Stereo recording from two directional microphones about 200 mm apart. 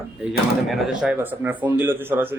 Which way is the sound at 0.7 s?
Centre (ahead or behind).